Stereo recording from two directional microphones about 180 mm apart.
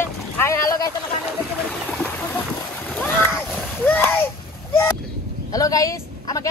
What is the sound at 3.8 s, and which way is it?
Speech, 10° left (ahead or behind).